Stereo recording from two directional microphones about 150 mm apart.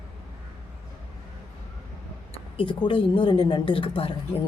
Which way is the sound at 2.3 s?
35° left (ahead or behind).